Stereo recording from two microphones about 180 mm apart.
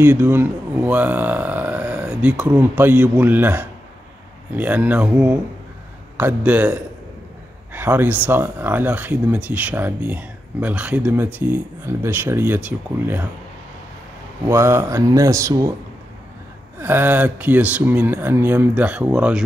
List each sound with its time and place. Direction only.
0.0 s speech: 10° right (ahead or behind)
14.4 s speech: 15° right (ahead or behind)
16.8 s speech: 10° right (ahead or behind)